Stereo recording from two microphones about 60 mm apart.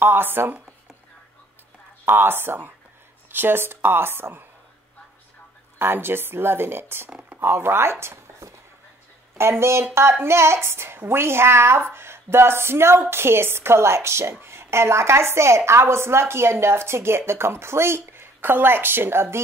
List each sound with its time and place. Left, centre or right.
0.0 s speech: right
2.0 s speech: right
5.8 s speech: right
9.4 s speech: right